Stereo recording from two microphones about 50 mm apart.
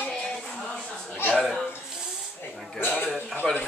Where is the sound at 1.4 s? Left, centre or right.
Centre.